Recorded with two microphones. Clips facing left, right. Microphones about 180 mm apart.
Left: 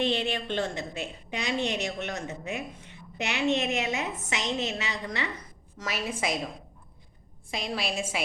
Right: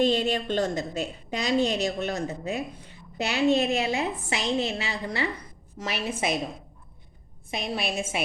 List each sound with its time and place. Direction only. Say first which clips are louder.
0.0 s a woman's voice: right 5 dB; 40° right (ahead or behind); by 6.4 s 25° right (ahead or behind)
7.5 s a woman's voice: right 2 dB; 20° right (ahead or behind)